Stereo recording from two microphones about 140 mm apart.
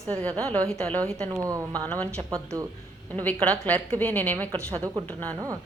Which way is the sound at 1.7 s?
10° left (ahead or behind).